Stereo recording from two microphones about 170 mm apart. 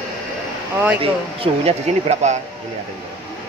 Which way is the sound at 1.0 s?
35° right (ahead or behind).